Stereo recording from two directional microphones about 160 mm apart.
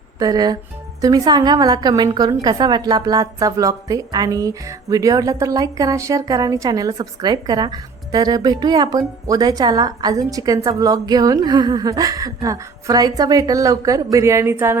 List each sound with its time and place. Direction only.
0.2 s a woman's voice: 25° right (ahead or behind)